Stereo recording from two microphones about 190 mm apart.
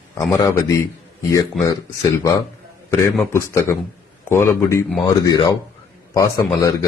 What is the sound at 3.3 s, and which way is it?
A man's voice, 15° left (ahead or behind).